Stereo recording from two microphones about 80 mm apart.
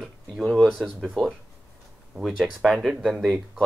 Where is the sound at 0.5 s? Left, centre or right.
Centre.